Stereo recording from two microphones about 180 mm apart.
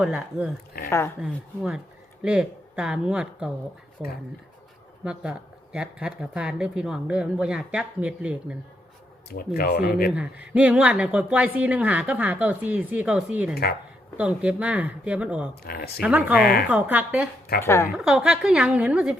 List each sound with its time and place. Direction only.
0.0 s speech: 5° right (ahead or behind)
0.9 s a woman's voice: 15° left (ahead or behind)
1.2 s speech: 5° right (ahead or behind)
9.6 s speech: 55° left (ahead or behind)
10.1 s speech: 5° right (ahead or behind)
15.6 s speech: 60° left (ahead or behind)
16.0 s speech: 10° right (ahead or behind)
16.4 s speech: 60° left (ahead or behind)
16.6 s speech: 10° right (ahead or behind)
17.6 s a woman's voice: 15° left (ahead or behind)
17.9 s speech: 5° right (ahead or behind)